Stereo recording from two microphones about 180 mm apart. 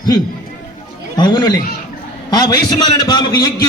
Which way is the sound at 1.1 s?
25° left (ahead or behind).